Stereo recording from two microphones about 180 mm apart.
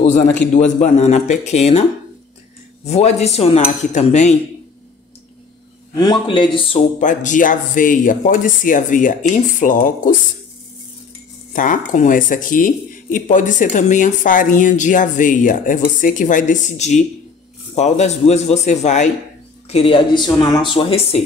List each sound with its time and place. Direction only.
0.0 s a man's voice: 40° left (ahead or behind)
5.9 s speech: 25° left (ahead or behind)
7.0 s speech: 45° left (ahead or behind)
11.5 s speech: 45° left (ahead or behind)